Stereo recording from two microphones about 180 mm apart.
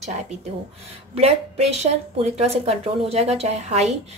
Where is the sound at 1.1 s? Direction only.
35° right (ahead or behind).